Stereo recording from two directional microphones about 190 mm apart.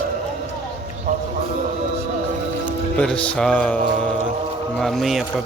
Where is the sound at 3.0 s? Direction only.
5° left (ahead or behind).